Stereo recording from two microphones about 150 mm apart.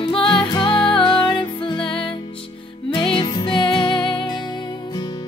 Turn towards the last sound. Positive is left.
turn(degrees=30)  # may be behind; listen again after turning